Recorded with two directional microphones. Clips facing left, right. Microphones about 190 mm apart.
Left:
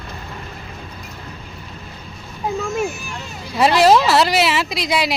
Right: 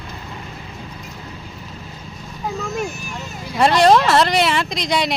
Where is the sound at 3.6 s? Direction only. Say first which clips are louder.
Even; 5° left (ahead or behind).